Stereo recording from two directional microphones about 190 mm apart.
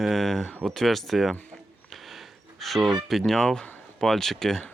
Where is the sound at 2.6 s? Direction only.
Centre (ahead or behind).